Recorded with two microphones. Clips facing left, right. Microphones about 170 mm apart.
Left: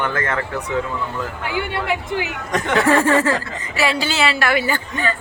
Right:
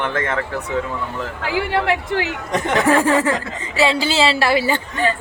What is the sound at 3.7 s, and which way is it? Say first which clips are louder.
A woman's voice: right 3 dB; 25° right (ahead or behind).